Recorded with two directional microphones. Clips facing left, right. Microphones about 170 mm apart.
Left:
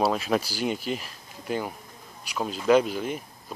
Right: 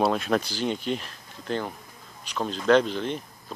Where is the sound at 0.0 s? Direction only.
5° left (ahead or behind).